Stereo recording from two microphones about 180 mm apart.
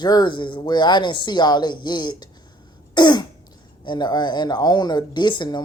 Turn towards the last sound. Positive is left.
turn(degrees=25)  # may be behind; listen again after turning